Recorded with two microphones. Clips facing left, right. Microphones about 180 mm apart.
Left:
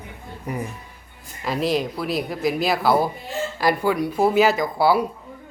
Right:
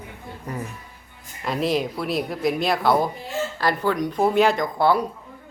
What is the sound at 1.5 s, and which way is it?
Speech, centre (ahead or behind).